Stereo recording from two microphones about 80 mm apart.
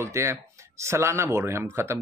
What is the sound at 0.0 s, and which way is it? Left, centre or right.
A man's voice, right.